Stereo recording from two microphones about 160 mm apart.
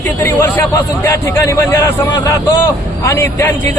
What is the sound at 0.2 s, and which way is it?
A man's voice, 10° left (ahead or behind).